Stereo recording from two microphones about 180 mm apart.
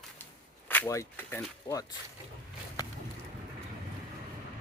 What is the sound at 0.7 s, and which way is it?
Speech, 15° left (ahead or behind).